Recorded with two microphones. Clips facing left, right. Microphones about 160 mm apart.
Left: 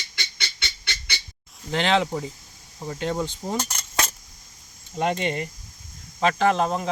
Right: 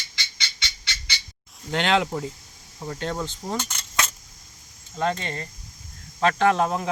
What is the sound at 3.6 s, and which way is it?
Coin, 40° left (ahead or behind).